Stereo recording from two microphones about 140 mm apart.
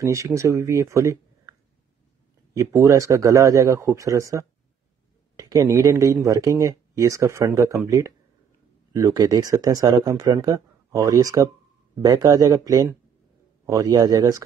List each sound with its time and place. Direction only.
0.0 s speech: 20° right (ahead or behind)
2.5 s speech: 25° right (ahead or behind)